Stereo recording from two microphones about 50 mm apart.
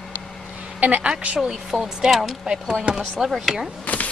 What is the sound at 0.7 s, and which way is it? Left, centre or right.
Speech, right.